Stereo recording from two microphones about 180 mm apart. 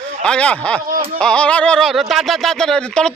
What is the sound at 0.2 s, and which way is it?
Speech, 5° left (ahead or behind).